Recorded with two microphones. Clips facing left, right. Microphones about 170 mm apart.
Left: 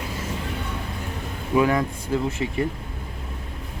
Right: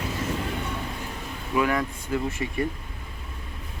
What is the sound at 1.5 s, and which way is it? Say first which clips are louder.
Speech: left 4 dB; 20° left (ahead or behind).